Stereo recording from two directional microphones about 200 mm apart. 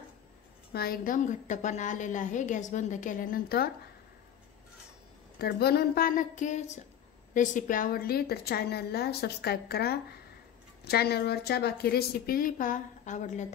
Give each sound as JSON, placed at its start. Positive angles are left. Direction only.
{"t": 0.7, "sound": "a woman's voice", "side_deg": 45}
{"t": 5.4, "sound": "a woman's voice", "side_deg": 50}